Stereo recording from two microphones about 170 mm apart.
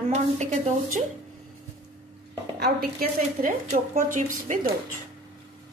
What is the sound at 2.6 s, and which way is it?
Speech, 65° right (ahead or behind).